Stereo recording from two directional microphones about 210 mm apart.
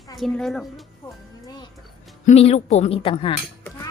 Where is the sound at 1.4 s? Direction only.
20° left (ahead or behind).